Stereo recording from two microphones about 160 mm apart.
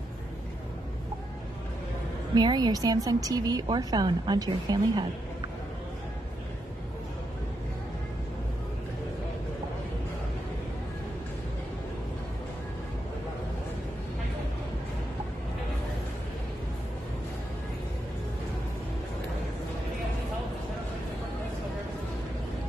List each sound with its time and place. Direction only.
2.3 s a woman's voice: 25° right (ahead or behind)